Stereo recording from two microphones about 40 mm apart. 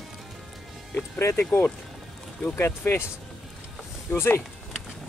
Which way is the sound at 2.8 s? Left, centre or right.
Left.